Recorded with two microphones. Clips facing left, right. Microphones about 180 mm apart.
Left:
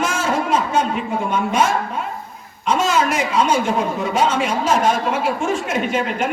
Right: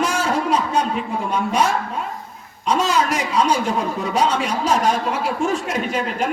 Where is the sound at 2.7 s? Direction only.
35° right (ahead or behind).